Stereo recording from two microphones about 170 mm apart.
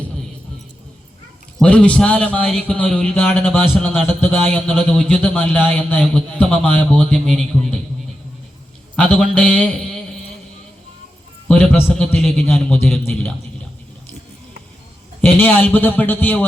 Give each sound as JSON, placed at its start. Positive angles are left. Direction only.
{"t": 1.5, "sound": "a man's voice", "side_deg": 5}
{"t": 9.0, "sound": "a man's voice", "side_deg": 10}
{"t": 11.4, "sound": "a sound", "side_deg": 5}
{"t": 11.9, "sound": "a man's voice", "side_deg": 5}
{"t": 15.2, "sound": "a man's voice", "side_deg": 10}